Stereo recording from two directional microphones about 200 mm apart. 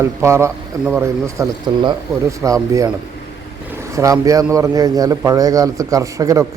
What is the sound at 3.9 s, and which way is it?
A man's voice, 15° right (ahead or behind).